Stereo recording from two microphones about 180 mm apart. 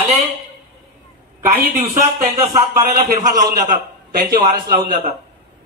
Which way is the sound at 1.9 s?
40° right (ahead or behind).